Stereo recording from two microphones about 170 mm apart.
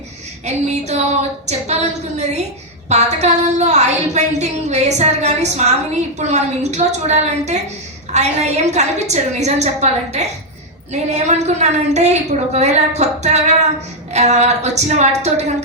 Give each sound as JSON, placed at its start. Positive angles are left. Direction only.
{"t": 0.4, "sound": "a woman's voice", "side_deg": -40}